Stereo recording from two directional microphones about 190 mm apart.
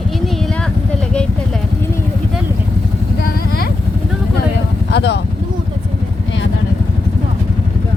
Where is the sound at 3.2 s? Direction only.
55° left (ahead or behind).